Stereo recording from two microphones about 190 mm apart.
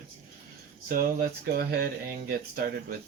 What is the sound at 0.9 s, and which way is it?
Speech, 45° right (ahead or behind).